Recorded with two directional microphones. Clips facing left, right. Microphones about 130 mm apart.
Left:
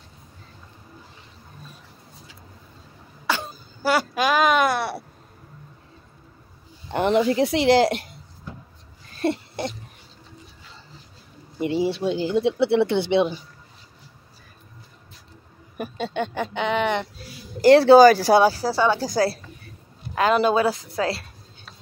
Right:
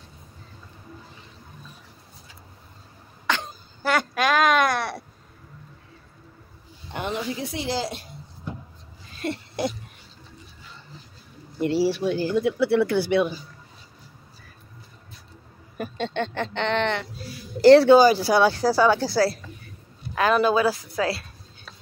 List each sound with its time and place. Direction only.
3.3 s a sound: 5° left (ahead or behind)
6.9 s a woman's voice: 60° left (ahead or behind)
9.2 s a sound: 30° left (ahead or behind)
11.5 s speech: 20° left (ahead or behind)
15.8 s speech: 10° left (ahead or behind)
17.9 s speech: 45° left (ahead or behind)
18.4 s speech: 5° left (ahead or behind)
18.9 s speech: 45° left (ahead or behind)
20.2 s speech: 25° left (ahead or behind)